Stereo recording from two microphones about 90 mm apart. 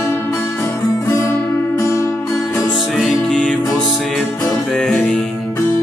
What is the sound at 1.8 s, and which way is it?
Music, 30° left (ahead or behind).